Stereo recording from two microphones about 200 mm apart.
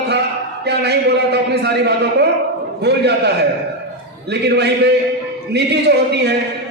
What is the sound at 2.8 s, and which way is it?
A man's voice, 55° right (ahead or behind).